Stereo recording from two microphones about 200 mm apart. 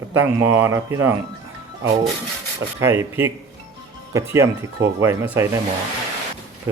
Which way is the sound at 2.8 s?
10° right (ahead or behind).